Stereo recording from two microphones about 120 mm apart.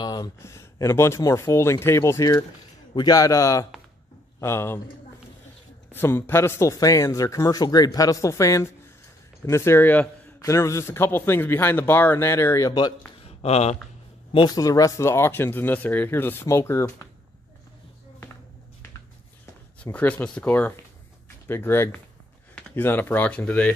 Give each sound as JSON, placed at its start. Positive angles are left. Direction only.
{"t": 0.0, "sound": "a sound", "side_deg": 35}
{"t": 0.4, "sound": "a man's voice", "side_deg": 25}
{"t": 5.9, "sound": "a man's voice", "side_deg": 15}
{"t": 13.2, "sound": "a sound", "side_deg": 60}
{"t": 14.3, "sound": "speech", "side_deg": 40}
{"t": 14.6, "sound": "a man's voice", "side_deg": 25}
{"t": 19.8, "sound": "a man's voice", "side_deg": 10}